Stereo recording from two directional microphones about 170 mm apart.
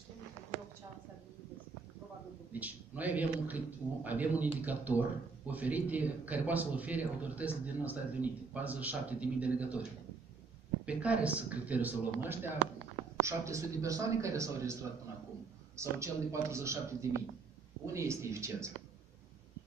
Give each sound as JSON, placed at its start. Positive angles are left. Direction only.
{"t": 2.5, "sound": "a man's voice", "side_deg": -10}
{"t": 10.9, "sound": "a man's voice", "side_deg": -10}